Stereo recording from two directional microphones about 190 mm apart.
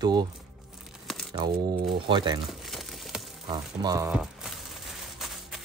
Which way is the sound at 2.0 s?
25° right (ahead or behind).